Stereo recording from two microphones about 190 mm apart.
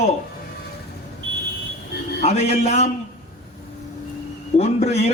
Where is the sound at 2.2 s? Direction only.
35° left (ahead or behind).